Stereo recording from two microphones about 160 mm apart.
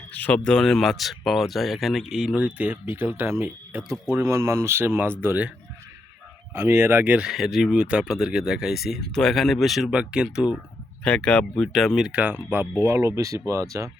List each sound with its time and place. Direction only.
0.1 s speech: 10° left (ahead or behind); by 5.5 s 10° right (ahead or behind)
6.5 s speech: 15° right (ahead or behind)
11.0 s speech: 5° left (ahead or behind); by 13.9 s 20° right (ahead or behind)